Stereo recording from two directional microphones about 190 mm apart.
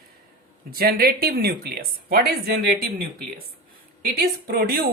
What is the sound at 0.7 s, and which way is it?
Speech, 50° right (ahead or behind).